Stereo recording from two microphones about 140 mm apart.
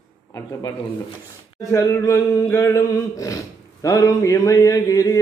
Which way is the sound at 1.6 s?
20° left (ahead or behind).